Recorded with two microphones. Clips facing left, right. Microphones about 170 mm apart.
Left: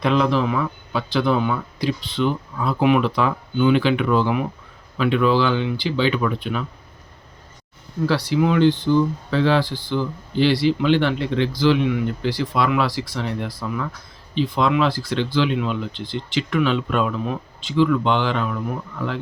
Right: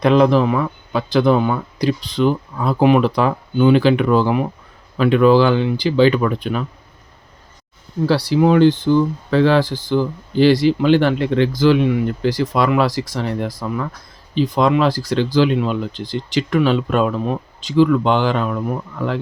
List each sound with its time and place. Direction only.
0.0 s speech: 45° right (ahead or behind)
8.0 s speech: 35° right (ahead or behind)